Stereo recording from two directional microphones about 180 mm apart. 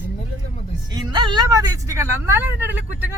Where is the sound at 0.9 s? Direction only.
25° right (ahead or behind).